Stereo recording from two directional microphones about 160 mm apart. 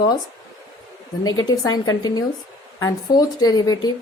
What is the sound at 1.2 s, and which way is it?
Speech, 25° left (ahead or behind).